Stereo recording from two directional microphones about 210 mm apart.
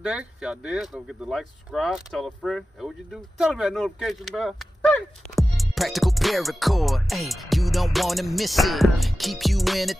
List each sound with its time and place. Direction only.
0.0 s speech: 5° right (ahead or behind)